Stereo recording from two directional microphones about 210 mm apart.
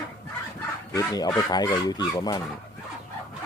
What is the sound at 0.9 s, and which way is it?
Speech, 15° left (ahead or behind).